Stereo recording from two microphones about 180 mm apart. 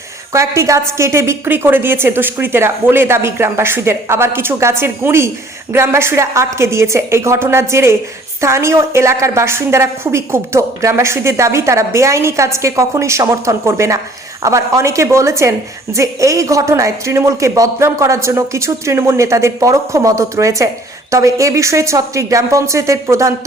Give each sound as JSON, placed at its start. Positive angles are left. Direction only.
{"t": 0.3, "sound": "a woman's voice", "side_deg": -15}